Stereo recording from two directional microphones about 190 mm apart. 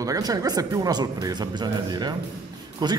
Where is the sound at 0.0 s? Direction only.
20° right (ahead or behind).